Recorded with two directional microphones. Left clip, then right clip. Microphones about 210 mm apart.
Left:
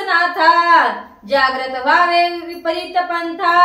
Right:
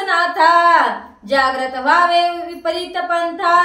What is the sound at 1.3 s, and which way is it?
Speech, 20° right (ahead or behind).